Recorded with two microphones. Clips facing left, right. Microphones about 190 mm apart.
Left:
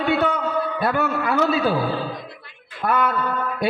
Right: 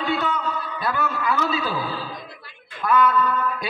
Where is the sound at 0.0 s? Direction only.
55° left (ahead or behind).